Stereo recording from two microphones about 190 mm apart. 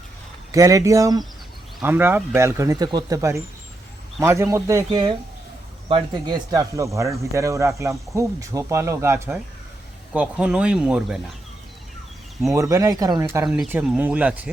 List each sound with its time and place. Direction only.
0.5 s speech: 15° right (ahead or behind)
4.9 s speech: 25° right (ahead or behind); by 11.2 s 5° right (ahead or behind)
12.5 s speech: 15° right (ahead or behind)
13.4 s speech: 5° right (ahead or behind)